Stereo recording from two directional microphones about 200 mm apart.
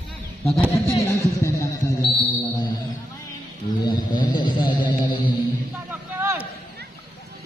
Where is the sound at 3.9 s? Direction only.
20° left (ahead or behind).